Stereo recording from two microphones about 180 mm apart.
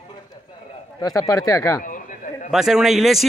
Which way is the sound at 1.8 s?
45° left (ahead or behind).